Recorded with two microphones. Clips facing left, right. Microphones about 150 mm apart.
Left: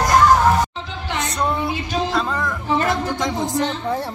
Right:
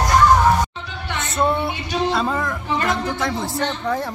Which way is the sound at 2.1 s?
5° right (ahead or behind).